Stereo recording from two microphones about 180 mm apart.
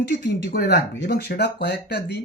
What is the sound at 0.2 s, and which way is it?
Speech, 40° right (ahead or behind).